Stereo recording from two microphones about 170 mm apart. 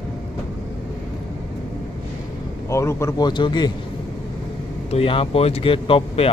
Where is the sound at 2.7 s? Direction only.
15° left (ahead or behind).